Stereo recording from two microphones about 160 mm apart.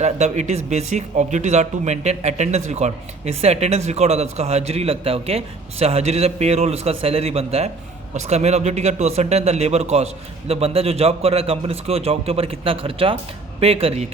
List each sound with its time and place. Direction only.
0.0 s a man's voice: 45° right (ahead or behind)